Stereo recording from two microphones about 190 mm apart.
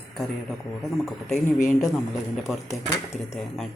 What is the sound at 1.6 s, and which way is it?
Speech, 45° left (ahead or behind).